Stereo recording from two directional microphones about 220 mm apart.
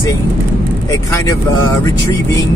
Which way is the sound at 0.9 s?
15° left (ahead or behind).